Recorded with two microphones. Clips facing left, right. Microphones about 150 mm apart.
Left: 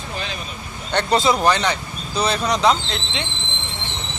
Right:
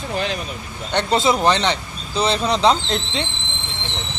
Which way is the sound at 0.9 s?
20° right (ahead or behind).